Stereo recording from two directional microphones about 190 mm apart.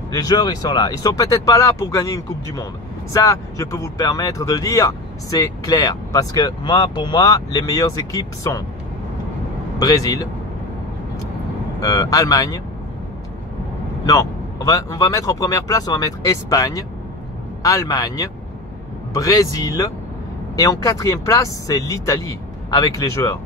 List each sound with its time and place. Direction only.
0.1 s speech: 20° left (ahead or behind)
9.8 s speech: 20° left (ahead or behind)
11.8 s speech: 15° left (ahead or behind)
14.0 s speech: 15° left (ahead or behind)